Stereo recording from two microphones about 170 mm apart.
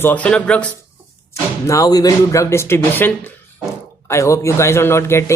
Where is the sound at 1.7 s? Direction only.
20° left (ahead or behind).